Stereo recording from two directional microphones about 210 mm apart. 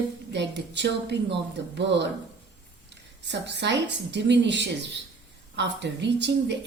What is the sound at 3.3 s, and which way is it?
A woman's voice, 55° right (ahead or behind).